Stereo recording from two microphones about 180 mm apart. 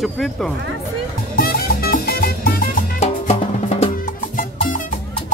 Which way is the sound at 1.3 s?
55° left (ahead or behind).